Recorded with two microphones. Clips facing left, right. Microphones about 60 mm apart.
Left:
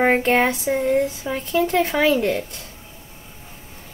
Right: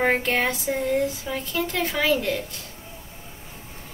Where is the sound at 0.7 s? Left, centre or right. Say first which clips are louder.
Left 4 dB; left.